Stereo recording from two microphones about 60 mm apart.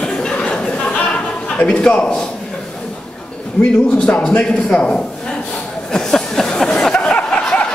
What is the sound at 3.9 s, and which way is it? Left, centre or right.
Speech, centre.